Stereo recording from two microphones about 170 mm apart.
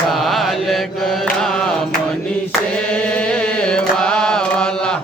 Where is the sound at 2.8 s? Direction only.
5° left (ahead or behind).